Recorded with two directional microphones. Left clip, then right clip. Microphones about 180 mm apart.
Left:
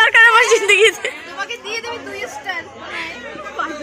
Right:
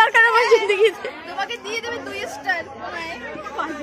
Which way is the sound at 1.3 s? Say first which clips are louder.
Left 1 dB; 20° right (ahead or behind).